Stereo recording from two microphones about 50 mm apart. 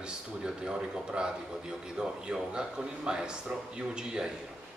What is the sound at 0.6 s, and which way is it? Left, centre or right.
A man's voice, centre.